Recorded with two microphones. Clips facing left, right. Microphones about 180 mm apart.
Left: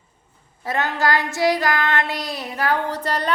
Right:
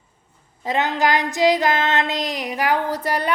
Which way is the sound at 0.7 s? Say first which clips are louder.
Right 2 dB; 15° right (ahead or behind).